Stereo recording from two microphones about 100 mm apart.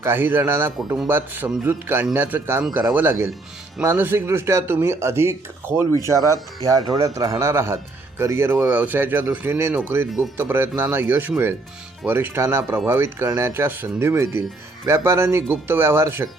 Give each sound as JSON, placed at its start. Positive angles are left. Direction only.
{"t": 0.0, "sound": "speech", "side_deg": -20}